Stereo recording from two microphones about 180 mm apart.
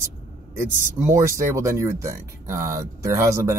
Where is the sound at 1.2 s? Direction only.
15° right (ahead or behind).